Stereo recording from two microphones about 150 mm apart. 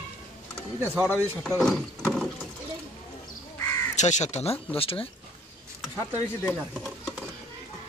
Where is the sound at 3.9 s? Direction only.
50° left (ahead or behind).